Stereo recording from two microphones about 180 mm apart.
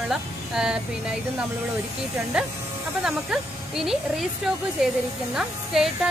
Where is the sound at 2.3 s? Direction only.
5° right (ahead or behind).